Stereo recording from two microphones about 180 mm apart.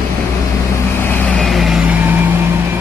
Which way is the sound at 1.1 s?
5° left (ahead or behind).